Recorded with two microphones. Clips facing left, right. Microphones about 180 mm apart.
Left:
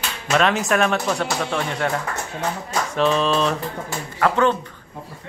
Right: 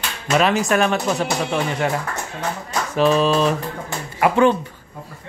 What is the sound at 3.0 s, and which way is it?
Speech, 5° right (ahead or behind).